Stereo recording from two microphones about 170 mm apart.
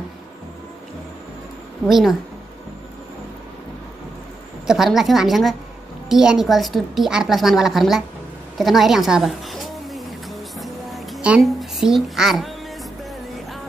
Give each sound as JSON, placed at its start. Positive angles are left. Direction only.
{"t": 1.9, "sound": "a woman's voice", "side_deg": 0}
{"t": 4.6, "sound": "a woman's voice", "side_deg": 0}
{"t": 11.2, "sound": "a woman's voice", "side_deg": -5}